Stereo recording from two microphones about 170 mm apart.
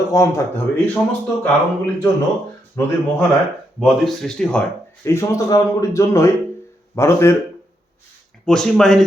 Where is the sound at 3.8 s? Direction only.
Centre (ahead or behind).